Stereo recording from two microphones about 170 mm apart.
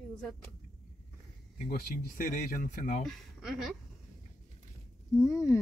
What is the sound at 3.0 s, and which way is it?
Speech, centre (ahead or behind).